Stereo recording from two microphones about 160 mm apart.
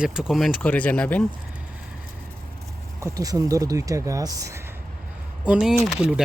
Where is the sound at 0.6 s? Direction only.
10° left (ahead or behind).